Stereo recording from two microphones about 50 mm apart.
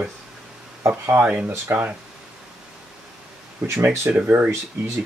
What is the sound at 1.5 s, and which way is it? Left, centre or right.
Speech, right.